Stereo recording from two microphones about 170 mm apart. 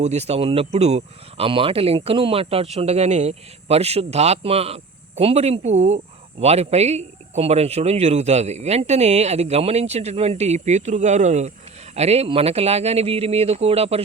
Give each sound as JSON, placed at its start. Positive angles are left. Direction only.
{"t": 0.0, "sound": "speech", "side_deg": -40}